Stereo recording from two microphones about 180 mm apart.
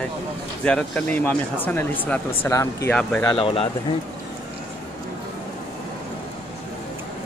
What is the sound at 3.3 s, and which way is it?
Speech, 30° left (ahead or behind).